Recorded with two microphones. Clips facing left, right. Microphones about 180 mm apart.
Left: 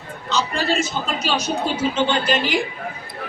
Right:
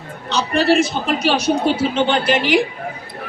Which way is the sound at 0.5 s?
65° right (ahead or behind).